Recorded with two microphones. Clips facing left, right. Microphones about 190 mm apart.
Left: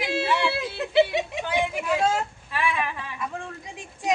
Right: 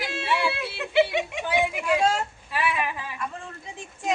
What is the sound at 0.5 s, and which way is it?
Speech, 35° left (ahead or behind).